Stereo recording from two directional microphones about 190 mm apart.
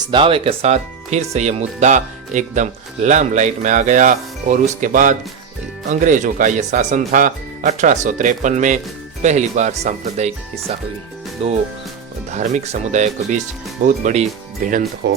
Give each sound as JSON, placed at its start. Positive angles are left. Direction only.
{"t": 0.1, "sound": "speech", "side_deg": -25}
{"t": 15.0, "sound": "speech", "side_deg": -60}